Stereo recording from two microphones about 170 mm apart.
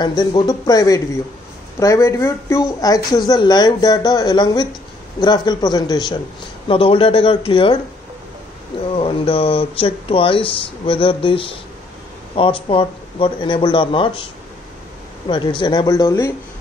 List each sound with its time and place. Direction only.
0.0 s speech: 25° left (ahead or behind)
8.9 s speech: 30° left (ahead or behind)
15.2 s speech: 25° left (ahead or behind)